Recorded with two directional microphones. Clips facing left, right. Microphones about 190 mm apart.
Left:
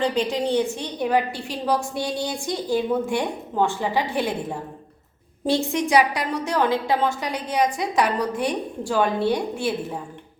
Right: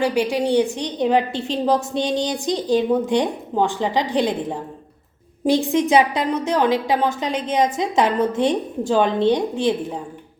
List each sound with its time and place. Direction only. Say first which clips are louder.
0.0 s a woman's voice: right 3 dB; 10° right (ahead or behind)
5.5 s a woman's voice: right 4 dB; 15° right (ahead or behind)